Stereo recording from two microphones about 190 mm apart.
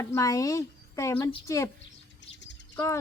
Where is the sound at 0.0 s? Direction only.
15° left (ahead or behind).